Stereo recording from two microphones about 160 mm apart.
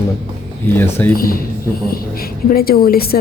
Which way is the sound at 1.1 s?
65° left (ahead or behind).